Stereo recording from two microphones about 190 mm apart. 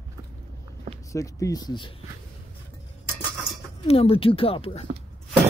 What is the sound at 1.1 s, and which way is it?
Speech, 15° left (ahead or behind).